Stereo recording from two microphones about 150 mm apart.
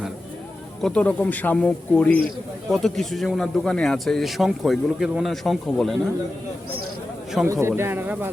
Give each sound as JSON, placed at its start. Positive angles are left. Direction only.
{"t": 0.8, "sound": "a man's voice", "side_deg": 5}
{"t": 7.4, "sound": "a man's voice", "side_deg": -20}